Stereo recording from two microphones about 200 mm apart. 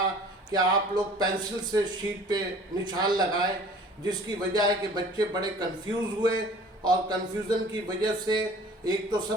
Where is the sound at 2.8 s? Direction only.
20° right (ahead or behind).